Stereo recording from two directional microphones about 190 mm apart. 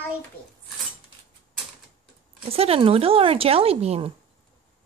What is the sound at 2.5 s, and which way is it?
Speech, 30° right (ahead or behind).